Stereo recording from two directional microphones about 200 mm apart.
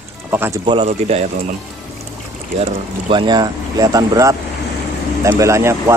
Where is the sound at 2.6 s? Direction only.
25° right (ahead or behind).